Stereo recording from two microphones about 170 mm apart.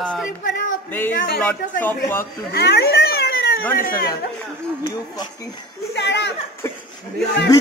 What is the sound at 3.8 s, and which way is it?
Speech, 55° left (ahead or behind).